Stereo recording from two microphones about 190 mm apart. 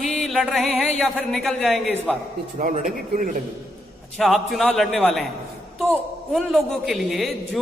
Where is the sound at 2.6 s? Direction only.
45° right (ahead or behind).